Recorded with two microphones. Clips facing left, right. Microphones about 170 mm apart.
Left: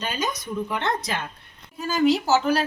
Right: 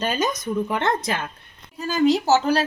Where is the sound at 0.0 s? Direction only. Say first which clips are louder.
Right 5 dB; 45° right (ahead or behind).